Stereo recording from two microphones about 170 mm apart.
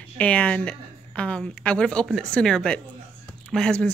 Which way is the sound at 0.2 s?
5° left (ahead or behind).